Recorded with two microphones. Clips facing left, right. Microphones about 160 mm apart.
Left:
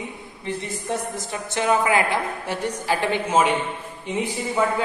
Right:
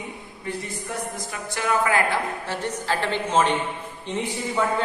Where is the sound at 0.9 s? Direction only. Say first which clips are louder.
Left 5 dB; 25° left (ahead or behind).